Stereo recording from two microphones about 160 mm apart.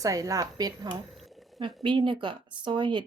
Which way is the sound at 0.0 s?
20° right (ahead or behind).